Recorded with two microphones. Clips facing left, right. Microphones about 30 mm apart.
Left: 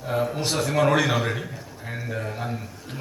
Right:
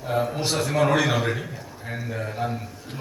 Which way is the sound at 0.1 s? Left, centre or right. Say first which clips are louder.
Right 1 dB; centre.